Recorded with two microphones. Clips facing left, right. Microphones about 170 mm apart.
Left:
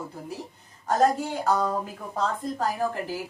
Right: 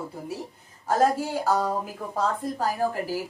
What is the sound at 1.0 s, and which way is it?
A woman's voice, 5° right (ahead or behind).